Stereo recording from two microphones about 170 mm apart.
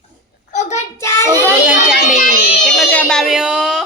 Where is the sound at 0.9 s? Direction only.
15° left (ahead or behind).